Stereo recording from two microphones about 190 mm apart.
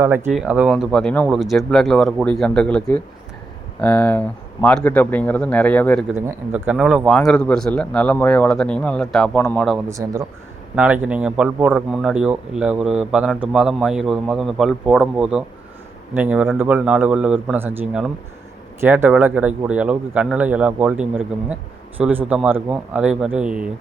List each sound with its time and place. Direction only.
0.0 s speech: 15° right (ahead or behind); by 6.1 s 5° left (ahead or behind)
6.1 s speech: 10° right (ahead or behind); by 9.6 s 10° left (ahead or behind)
9.9 s speech: 15° right (ahead or behind)
10.8 s speech: 5° right (ahead or behind)